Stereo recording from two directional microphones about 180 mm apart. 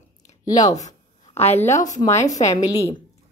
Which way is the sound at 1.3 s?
35° left (ahead or behind).